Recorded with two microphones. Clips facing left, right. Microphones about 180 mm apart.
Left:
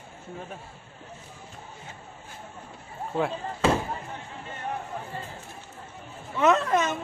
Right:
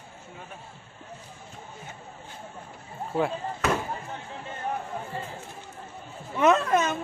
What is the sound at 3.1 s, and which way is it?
Speech, 5° right (ahead or behind).